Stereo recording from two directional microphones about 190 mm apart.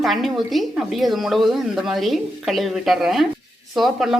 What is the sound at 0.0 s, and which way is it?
A woman's voice, centre (ahead or behind).